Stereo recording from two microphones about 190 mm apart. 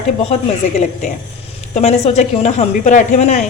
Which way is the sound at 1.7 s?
35° left (ahead or behind).